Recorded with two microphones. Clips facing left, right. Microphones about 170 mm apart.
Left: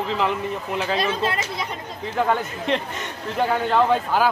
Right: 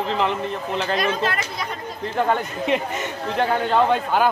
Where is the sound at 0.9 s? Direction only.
25° left (ahead or behind).